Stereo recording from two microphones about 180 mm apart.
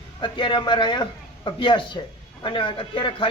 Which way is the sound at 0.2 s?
25° left (ahead or behind).